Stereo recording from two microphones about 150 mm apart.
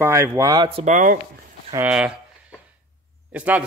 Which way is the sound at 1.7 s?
10° right (ahead or behind).